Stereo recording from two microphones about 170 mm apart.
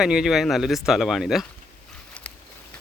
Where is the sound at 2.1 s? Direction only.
5° left (ahead or behind).